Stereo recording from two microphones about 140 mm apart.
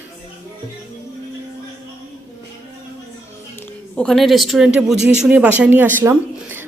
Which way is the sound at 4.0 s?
Centre (ahead or behind).